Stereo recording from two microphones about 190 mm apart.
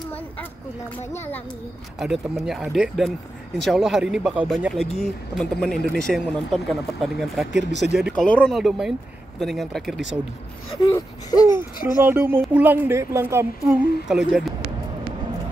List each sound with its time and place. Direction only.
0.1 s a sound: 10° left (ahead or behind)
2.0 s speech: centre (ahead or behind)
10.8 s speech: 20° left (ahead or behind)
12.0 s speech: 10° right (ahead or behind)
14.0 s speech: centre (ahead or behind)